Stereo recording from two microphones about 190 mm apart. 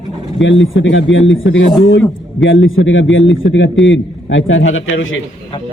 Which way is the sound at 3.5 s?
75° left (ahead or behind).